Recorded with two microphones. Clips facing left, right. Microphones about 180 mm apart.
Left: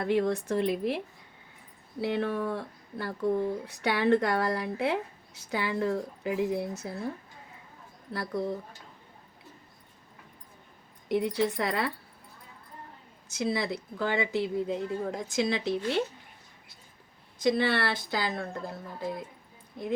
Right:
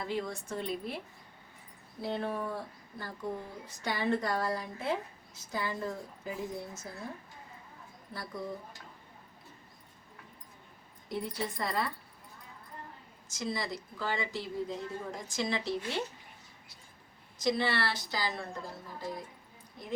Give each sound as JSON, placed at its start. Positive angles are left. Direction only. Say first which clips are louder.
{"t": 0.0, "sound": "speech", "louder": "left 9 dB", "side_deg": 60}
{"t": 8.1, "sound": "speech", "louder": "left 8 dB", "side_deg": 70}
{"t": 11.1, "sound": "speech", "louder": "left 9 dB", "side_deg": 75}
{"t": 13.3, "sound": "speech", "louder": "left 6 dB", "side_deg": 65}
{"t": 17.4, "sound": "speech", "louder": "left 5 dB", "side_deg": 55}